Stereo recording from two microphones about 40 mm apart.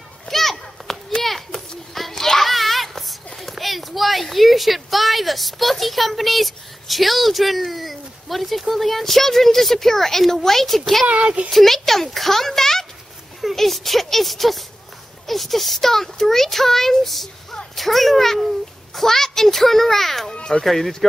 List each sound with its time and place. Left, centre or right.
0.3 s children playing: centre
3.3 s speech: centre
11.1 s speech: right
11.5 s a child's voice: centre